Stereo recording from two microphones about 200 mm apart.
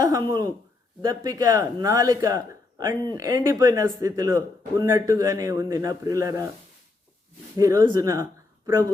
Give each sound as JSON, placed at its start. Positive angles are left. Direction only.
{"t": 0.0, "sound": "a man's voice", "side_deg": -20}
{"t": 7.6, "sound": "speech", "side_deg": -20}